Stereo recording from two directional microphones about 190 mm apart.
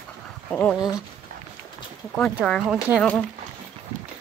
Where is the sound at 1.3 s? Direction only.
50° right (ahead or behind).